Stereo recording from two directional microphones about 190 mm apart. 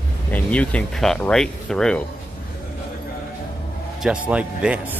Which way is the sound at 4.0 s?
5° right (ahead or behind).